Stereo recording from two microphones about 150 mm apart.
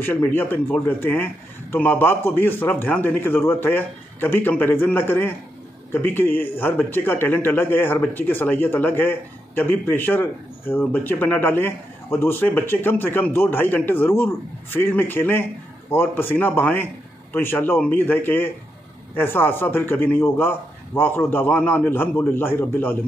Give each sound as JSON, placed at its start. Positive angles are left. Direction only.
{"t": 0.0, "sound": "a man's voice", "side_deg": 10}